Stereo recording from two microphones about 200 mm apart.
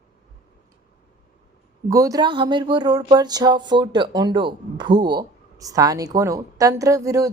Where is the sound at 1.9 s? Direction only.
15° right (ahead or behind).